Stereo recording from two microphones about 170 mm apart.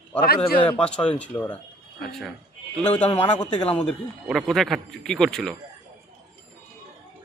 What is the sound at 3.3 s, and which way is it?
Speech, 30° left (ahead or behind).